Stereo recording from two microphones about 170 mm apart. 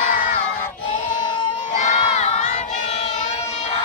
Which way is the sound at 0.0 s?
55° left (ahead or behind).